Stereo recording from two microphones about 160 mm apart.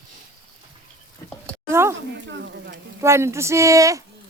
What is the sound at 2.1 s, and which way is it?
Speech, 90° right.